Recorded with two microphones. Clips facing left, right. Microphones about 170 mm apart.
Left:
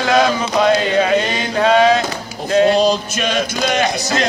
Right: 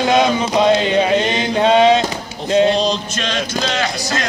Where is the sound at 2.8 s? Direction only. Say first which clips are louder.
Left 4 dB; 5° left (ahead or behind).